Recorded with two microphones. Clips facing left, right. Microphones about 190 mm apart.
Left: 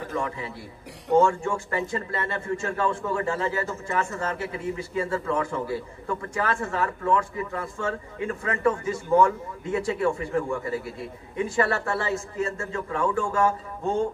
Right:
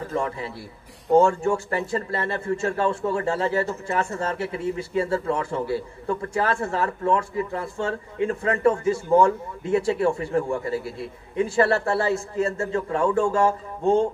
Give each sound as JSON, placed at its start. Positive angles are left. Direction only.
{"t": 0.1, "sound": "speech", "side_deg": -35}